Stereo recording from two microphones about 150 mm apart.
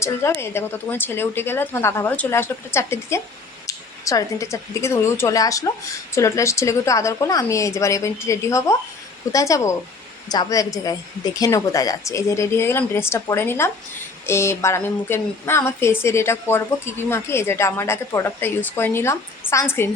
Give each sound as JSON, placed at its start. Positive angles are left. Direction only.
{"t": 0.0, "sound": "a woman's voice", "side_deg": 20}